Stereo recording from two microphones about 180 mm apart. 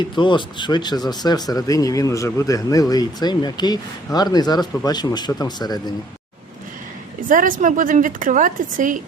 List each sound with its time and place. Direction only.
0.0 s speech: 25° left (ahead or behind)
7.3 s a woman's voice: 50° right (ahead or behind)